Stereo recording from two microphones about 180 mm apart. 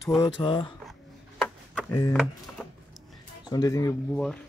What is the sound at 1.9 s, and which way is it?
Speech, 20° left (ahead or behind).